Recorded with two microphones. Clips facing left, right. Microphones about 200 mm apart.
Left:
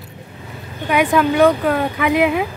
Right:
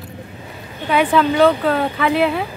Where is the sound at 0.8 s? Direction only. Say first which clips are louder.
Even; 10° left (ahead or behind).